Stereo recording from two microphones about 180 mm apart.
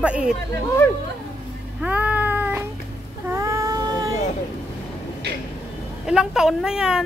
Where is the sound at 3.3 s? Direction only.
15° right (ahead or behind).